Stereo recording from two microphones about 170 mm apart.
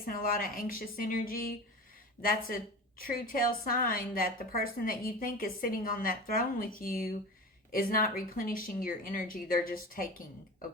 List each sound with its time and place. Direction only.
0.0 s a woman's voice: 55° left (ahead or behind)